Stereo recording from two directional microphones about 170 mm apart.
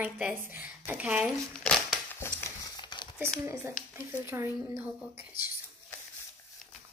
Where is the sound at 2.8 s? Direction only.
25° left (ahead or behind).